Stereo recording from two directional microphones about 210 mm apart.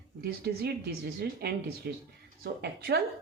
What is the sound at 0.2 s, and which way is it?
Speech, 50° right (ahead or behind).